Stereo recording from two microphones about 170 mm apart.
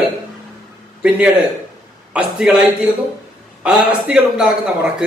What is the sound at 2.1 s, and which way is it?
A man's voice, 5° right (ahead or behind).